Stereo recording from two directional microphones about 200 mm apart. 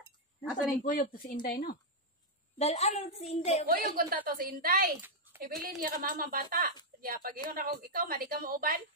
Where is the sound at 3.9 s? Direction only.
45° right (ahead or behind).